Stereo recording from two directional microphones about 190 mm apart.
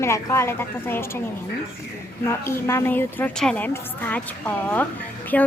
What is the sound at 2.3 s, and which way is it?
A woman's voice, 15° left (ahead or behind).